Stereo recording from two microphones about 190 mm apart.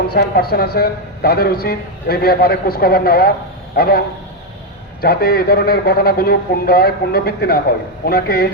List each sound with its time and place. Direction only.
0.1 s a man's voice: 55° left (ahead or behind)